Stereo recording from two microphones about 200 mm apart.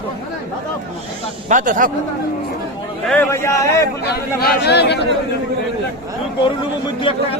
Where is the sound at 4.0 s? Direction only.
55° left (ahead or behind).